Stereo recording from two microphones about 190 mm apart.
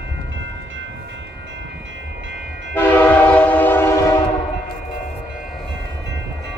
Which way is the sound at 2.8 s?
10° left (ahead or behind).